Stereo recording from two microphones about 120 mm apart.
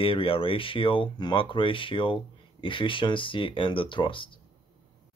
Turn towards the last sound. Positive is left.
turn(degrees=45)  # may be behind; listen again after turning